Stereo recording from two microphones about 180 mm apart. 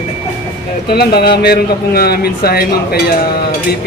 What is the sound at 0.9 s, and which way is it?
A man's voice, 60° left (ahead or behind).